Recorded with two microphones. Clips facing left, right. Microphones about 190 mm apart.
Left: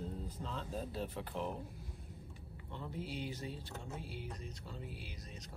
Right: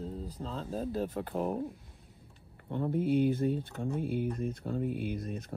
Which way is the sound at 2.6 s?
55° right (ahead or behind).